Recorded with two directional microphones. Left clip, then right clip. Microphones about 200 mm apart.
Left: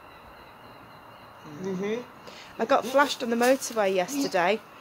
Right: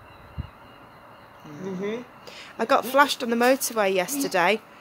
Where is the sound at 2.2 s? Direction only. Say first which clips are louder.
Right 2 dB; 30° right (ahead or behind).